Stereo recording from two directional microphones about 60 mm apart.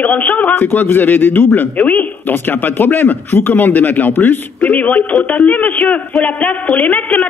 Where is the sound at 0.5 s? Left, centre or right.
Left.